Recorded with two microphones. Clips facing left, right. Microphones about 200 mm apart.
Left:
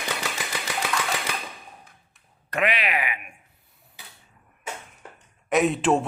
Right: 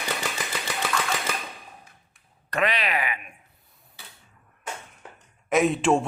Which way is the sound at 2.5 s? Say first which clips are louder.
Even; 35° right (ahead or behind).